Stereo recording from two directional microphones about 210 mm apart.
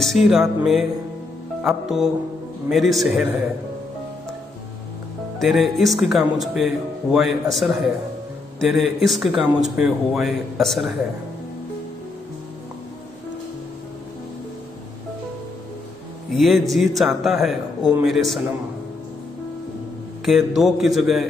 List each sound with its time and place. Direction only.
0.0 s speech: centre (ahead or behind)
5.4 s speech: centre (ahead or behind)
16.3 s speech: centre (ahead or behind)
20.2 s speech: centre (ahead or behind)